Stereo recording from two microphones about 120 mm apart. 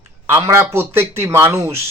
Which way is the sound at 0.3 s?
20° right (ahead or behind).